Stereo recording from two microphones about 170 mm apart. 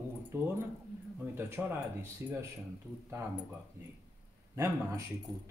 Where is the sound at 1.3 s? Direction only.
15° right (ahead or behind).